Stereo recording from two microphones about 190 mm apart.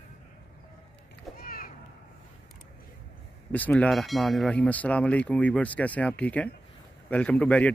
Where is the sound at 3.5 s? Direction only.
10° left (ahead or behind).